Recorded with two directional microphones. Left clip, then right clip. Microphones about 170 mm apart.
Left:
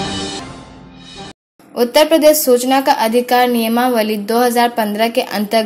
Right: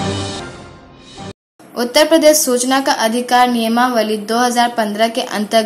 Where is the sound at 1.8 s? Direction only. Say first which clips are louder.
Left 1 dB; 25° left (ahead or behind).